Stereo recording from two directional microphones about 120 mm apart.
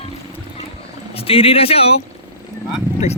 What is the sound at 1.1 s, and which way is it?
Speech, 55° left (ahead or behind).